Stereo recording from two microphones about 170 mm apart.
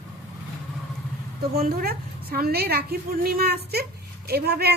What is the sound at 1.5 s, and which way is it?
A woman's voice, 60° right (ahead or behind).